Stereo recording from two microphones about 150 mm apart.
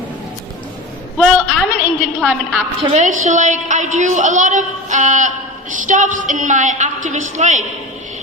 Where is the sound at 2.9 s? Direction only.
55° right (ahead or behind).